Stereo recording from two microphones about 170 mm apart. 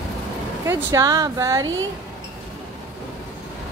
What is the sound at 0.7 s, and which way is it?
Speech, 20° right (ahead or behind).